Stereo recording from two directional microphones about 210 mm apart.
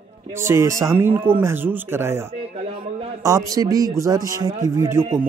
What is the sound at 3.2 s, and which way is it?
Speech, 15° right (ahead or behind).